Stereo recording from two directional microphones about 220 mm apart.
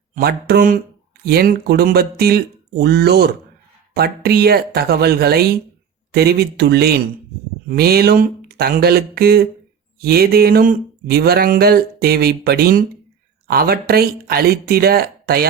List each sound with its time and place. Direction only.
0.1 s speech: 45° right (ahead or behind)